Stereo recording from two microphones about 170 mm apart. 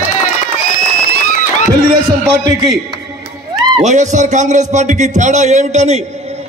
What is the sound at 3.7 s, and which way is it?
A man's voice, 45° right (ahead or behind).